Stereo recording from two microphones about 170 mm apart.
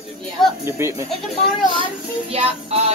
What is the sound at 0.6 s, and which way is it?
Speech, 15° right (ahead or behind).